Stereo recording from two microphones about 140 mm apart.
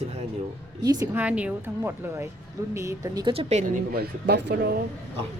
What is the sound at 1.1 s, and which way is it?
Speech, 10° right (ahead or behind).